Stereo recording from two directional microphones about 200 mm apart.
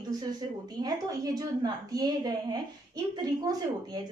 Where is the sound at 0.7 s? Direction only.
20° right (ahead or behind).